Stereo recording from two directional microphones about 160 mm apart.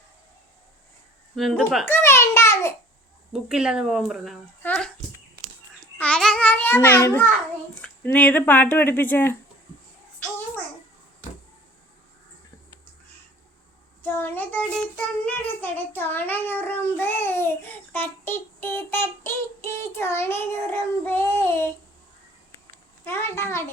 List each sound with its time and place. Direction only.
1.4 s speech: centre (ahead or behind)
1.9 s a child's voice: 15° left (ahead or behind)
3.5 s speech: 5° right (ahead or behind)
4.6 s a child's voice: 10° left (ahead or behind)
6.0 s babbling: 5° left (ahead or behind)
7.8 s a child's voice: 10° left (ahead or behind)
14.0 s a child's voice: 10° left (ahead or behind)
23.0 s a child's voice: 15° left (ahead or behind)